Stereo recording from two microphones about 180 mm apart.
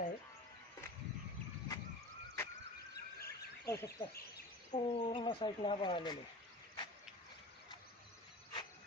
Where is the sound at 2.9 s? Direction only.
60° left (ahead or behind).